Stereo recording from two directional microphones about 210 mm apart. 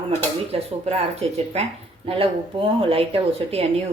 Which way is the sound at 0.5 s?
30° right (ahead or behind).